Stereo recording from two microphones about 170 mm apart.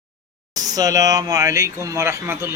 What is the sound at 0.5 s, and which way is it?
Speech, 20° right (ahead or behind).